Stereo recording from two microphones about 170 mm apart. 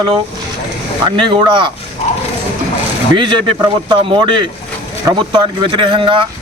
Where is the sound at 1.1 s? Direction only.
30° right (ahead or behind).